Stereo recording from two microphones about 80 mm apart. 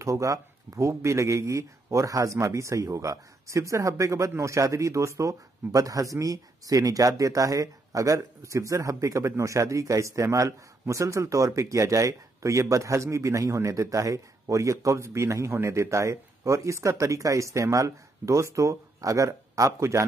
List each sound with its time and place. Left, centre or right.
0.0 s speech: right